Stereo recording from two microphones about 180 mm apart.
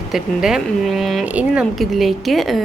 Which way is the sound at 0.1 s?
Centre (ahead or behind).